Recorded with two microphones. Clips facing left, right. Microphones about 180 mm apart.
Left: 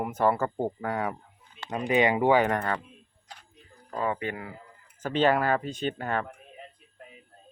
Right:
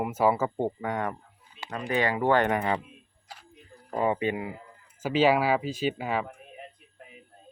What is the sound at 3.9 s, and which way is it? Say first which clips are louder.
Speech: right 4 dB; 20° right (ahead or behind).